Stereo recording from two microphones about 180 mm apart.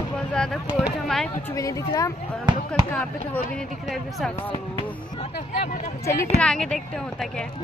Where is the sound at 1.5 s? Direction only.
20° left (ahead or behind).